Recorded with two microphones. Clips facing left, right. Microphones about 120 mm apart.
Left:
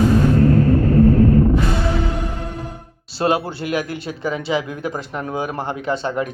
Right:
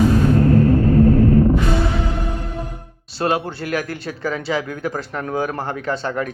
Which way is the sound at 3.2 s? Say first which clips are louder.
Left 1 dB; 30° left (ahead or behind).